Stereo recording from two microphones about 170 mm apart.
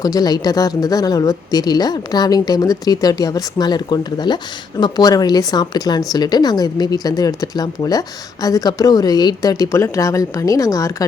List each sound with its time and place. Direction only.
0.0 s speech: 20° left (ahead or behind)